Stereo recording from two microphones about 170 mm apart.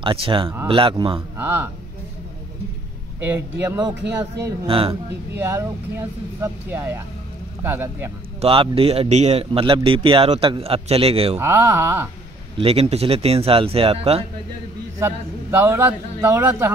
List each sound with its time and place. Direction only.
0.0 s a man's voice: 30° right (ahead or behind)
1.3 s speech: 15° right (ahead or behind)
3.2 s speech: 10° right (ahead or behind)
4.6 s a man's voice: 30° right (ahead or behind)
5.4 s a man's voice: 15° right (ahead or behind)
8.4 s a man's voice: 35° right (ahead or behind)
11.3 s a man's voice: 15° right (ahead or behind)
12.5 s a man's voice: 35° right (ahead or behind)
15.0 s a man's voice: 15° right (ahead or behind)